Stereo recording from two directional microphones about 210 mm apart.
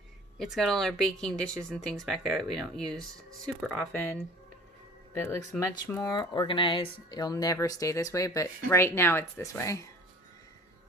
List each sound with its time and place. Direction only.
0.4 s speech: centre (ahead or behind)
5.1 s speech: 10° left (ahead or behind)